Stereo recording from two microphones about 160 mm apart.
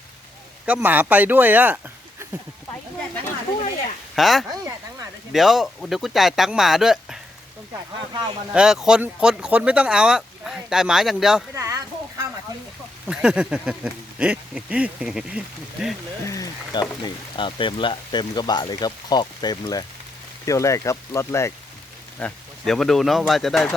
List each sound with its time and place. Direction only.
0.6 s speech: 10° right (ahead or behind)
4.1 s speech: centre (ahead or behind)
8.5 s speech: 5° right (ahead or behind)
11.5 s a sound: 20° right (ahead or behind)
13.1 s speech: 5° right (ahead or behind)
16.2 s speech: 20° left (ahead or behind)
17.0 s speech: 30° left (ahead or behind)
22.2 s speech: centre (ahead or behind)